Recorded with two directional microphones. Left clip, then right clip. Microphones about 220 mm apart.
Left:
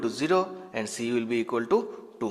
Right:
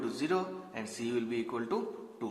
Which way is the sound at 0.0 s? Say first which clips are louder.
Left 8 dB; 40° left (ahead or behind).